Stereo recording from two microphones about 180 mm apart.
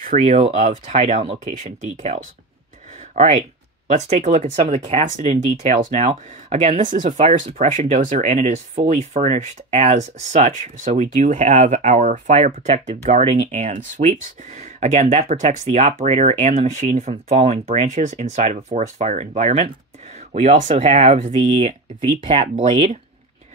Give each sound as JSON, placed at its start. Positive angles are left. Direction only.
{"t": 0.2, "sound": "speech", "side_deg": -35}